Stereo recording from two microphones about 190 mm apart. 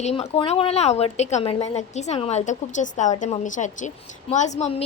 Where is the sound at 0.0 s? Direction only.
35° left (ahead or behind).